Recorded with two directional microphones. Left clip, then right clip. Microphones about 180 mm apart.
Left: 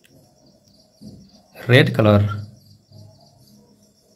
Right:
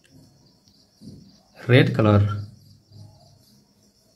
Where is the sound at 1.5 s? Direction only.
15° left (ahead or behind).